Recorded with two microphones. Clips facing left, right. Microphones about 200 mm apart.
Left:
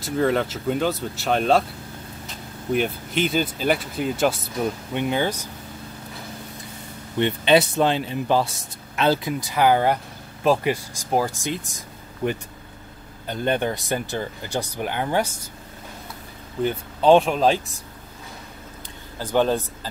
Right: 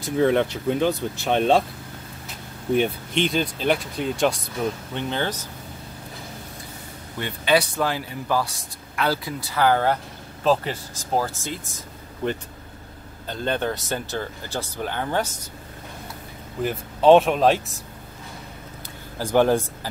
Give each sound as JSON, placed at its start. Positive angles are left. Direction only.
{"t": 0.0, "sound": "speech", "side_deg": 0}
{"t": 2.7, "sound": "speech", "side_deg": 5}
{"t": 7.2, "sound": "speech", "side_deg": 20}
{"t": 16.6, "sound": "speech", "side_deg": 0}
{"t": 19.1, "sound": "speech", "side_deg": -10}